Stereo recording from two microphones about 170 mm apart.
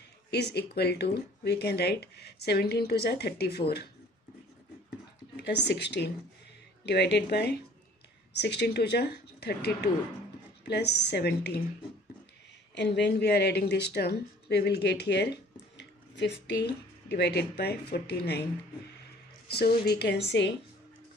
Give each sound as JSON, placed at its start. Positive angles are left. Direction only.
{"t": 0.3, "sound": "speech", "side_deg": 80}
{"t": 5.4, "sound": "a woman's voice", "side_deg": 90}
{"t": 12.7, "sound": "speech", "side_deg": 90}
{"t": 15.8, "sound": "a sound", "side_deg": 90}
{"t": 17.1, "sound": "speech", "side_deg": 75}
{"t": 19.5, "sound": "speech", "side_deg": 65}